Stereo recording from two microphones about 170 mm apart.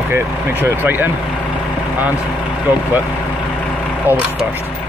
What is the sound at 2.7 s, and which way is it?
Speech, 10° right (ahead or behind).